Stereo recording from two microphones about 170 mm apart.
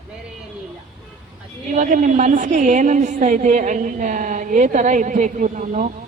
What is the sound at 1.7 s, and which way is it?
A woman's voice, 45° right (ahead or behind).